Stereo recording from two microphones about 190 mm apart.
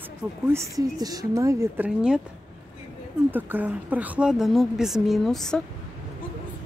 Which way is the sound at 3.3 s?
10° right (ahead or behind).